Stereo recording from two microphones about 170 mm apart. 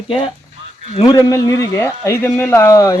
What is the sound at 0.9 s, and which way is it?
Speech, 25° left (ahead or behind).